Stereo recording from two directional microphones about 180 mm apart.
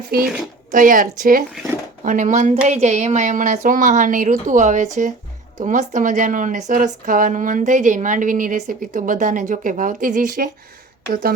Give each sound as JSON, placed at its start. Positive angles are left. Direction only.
{"t": 0.1, "sound": "speech", "side_deg": -55}